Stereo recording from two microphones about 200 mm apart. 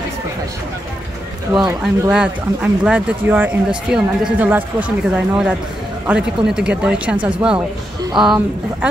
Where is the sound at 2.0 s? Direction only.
5° right (ahead or behind).